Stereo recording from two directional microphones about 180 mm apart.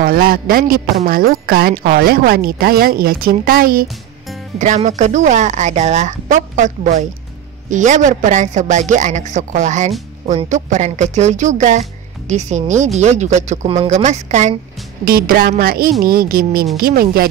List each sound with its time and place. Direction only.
0.0 s speech: 55° right (ahead or behind)
4.6 s a woman's voice: 40° right (ahead or behind)
15.0 s speech: 55° right (ahead or behind)